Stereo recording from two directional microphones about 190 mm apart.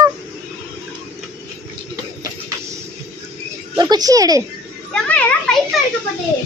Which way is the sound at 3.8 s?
20° right (ahead or behind).